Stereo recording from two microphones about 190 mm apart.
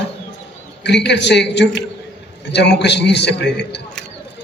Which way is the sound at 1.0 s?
65° left (ahead or behind).